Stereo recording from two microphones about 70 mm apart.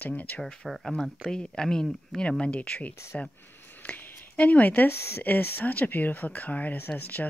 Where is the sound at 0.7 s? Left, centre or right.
Centre.